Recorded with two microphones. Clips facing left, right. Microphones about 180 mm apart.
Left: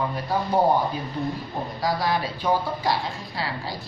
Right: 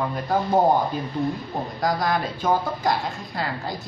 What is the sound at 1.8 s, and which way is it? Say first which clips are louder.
Speech: right 1 dB; 50° right (ahead or behind).